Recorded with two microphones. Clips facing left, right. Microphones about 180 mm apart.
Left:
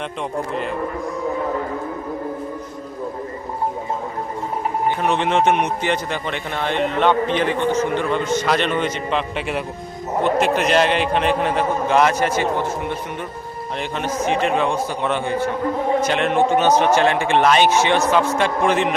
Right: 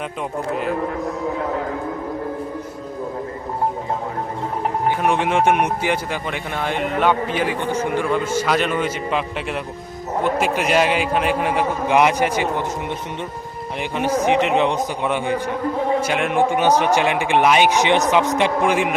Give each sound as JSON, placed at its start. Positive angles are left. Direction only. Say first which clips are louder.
{"t": 4.9, "sound": "speech", "louder": "right 1 dB", "side_deg": -10}
{"t": 13.9, "sound": "speech", "louder": "right 4 dB", "side_deg": -10}